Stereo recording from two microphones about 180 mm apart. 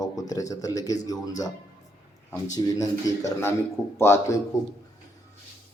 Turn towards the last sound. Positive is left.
turn(degrees=15)  # may be behind; listen again after turning